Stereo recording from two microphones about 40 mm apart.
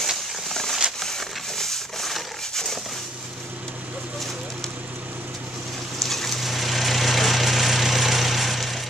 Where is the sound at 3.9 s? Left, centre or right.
Right.